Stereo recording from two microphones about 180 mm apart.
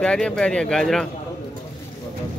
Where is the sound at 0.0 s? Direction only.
5° left (ahead or behind).